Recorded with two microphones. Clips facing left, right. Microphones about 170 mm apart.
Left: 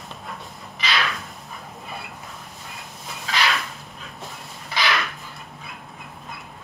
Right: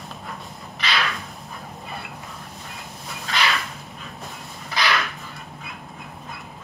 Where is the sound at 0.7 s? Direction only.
Centre (ahead or behind).